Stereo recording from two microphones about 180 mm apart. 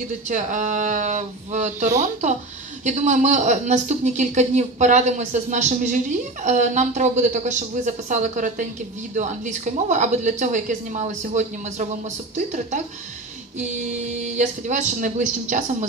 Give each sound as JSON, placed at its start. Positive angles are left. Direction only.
{"t": 0.3, "sound": "a woman's voice", "side_deg": -40}
{"t": 13.6, "sound": "a woman's voice", "side_deg": -40}